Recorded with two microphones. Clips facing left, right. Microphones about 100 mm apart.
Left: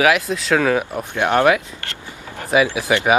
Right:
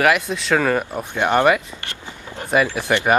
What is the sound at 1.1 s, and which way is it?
Speech, 10° right (ahead or behind).